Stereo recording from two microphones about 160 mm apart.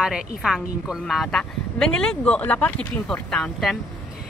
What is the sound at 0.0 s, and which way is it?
A woman's voice, 5° right (ahead or behind).